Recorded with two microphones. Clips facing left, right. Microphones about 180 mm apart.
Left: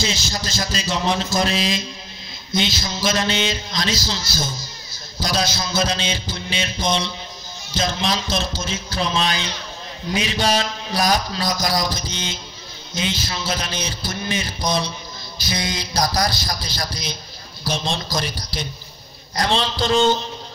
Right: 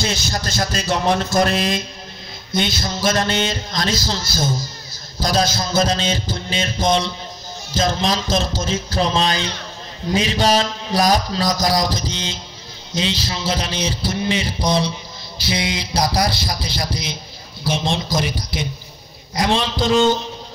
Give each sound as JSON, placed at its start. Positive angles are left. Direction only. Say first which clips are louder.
{"t": 0.0, "sound": "a man's voice", "louder": "right 2 dB", "side_deg": -55}
{"t": 7.7, "sound": "a sound", "louder": "right 3 dB", "side_deg": -40}
{"t": 15.4, "sound": "a man's voice", "louder": "right 3 dB", "side_deg": -30}
{"t": 19.3, "sound": "a man's voice", "louder": "right 2 dB", "side_deg": -15}